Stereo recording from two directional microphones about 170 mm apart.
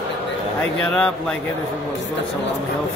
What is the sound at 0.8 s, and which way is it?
Speech, 5° left (ahead or behind).